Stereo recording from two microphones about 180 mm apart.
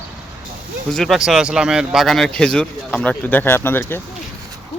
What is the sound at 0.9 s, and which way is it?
Speech, centre (ahead or behind).